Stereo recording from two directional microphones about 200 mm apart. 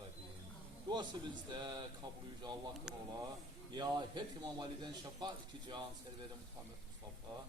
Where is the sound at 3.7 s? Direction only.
20° right (ahead or behind).